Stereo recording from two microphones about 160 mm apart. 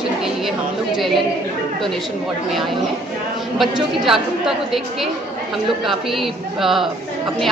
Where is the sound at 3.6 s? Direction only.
Centre (ahead or behind).